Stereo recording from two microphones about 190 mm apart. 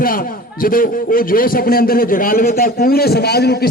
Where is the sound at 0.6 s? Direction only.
50° left (ahead or behind).